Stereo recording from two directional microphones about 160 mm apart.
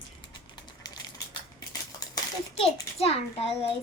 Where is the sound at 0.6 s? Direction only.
25° left (ahead or behind).